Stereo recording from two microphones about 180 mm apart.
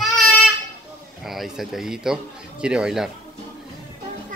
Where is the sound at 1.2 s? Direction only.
Centre (ahead or behind).